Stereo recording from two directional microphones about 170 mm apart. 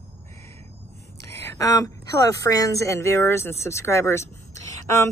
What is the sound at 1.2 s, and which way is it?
A woman's voice, 15° left (ahead or behind).